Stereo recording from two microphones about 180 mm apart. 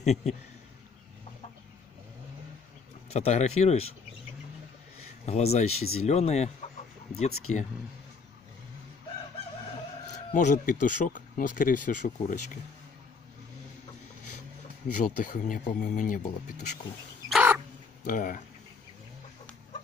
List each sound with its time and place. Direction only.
0.0 s speech: 40° left (ahead or behind)
3.1 s speech: 35° left (ahead or behind)
5.2 s speech: 35° left (ahead or behind)
10.0 s speech: 40° left (ahead or behind)
15.0 s speech: 45° left (ahead or behind)
17.3 s crow: 10° right (ahead or behind)
18.0 s speech: 50° left (ahead or behind)